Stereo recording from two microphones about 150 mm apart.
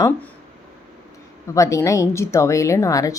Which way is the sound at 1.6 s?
20° left (ahead or behind).